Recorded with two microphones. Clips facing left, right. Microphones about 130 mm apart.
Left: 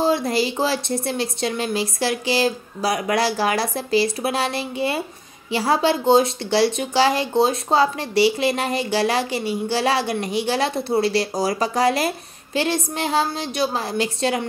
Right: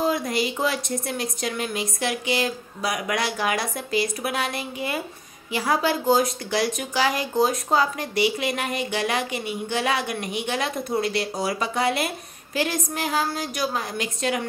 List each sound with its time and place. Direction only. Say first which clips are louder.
0.0 s a woman's voice: left 4 dB; 30° left (ahead or behind)